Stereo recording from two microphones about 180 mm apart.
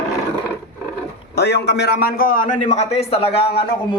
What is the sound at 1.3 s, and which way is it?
A man's voice, 65° left (ahead or behind).